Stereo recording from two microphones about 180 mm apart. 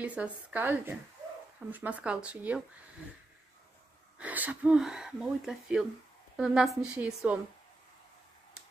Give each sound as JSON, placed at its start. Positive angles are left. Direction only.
{"t": 0.0, "sound": "a woman's voice", "side_deg": -5}
{"t": 4.2, "sound": "speech", "side_deg": -10}